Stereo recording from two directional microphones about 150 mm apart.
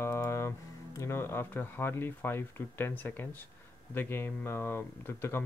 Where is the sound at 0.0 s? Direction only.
15° left (ahead or behind).